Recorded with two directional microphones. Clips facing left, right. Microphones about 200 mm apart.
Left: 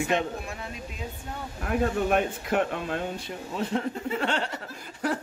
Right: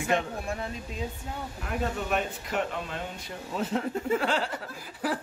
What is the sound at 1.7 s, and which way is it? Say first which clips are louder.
Speech: left 6 dB; 50° left (ahead or behind).